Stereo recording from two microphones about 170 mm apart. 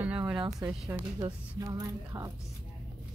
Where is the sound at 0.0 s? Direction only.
10° right (ahead or behind).